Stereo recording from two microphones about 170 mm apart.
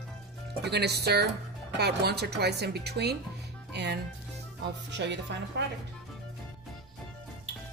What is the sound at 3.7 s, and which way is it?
Speech, 85° right.